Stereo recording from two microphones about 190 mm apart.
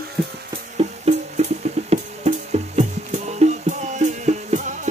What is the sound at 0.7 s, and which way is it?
Music, 35° right (ahead or behind).